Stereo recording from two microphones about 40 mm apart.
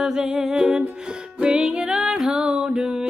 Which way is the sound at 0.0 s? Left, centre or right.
Centre.